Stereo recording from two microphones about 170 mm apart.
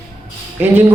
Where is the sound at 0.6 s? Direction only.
10° right (ahead or behind).